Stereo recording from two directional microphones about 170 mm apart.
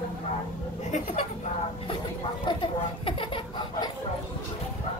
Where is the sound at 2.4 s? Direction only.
30° left (ahead or behind).